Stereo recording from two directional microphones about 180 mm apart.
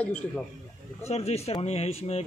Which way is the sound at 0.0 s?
10° left (ahead or behind).